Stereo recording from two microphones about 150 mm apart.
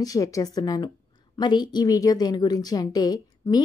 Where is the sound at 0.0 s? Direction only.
25° left (ahead or behind).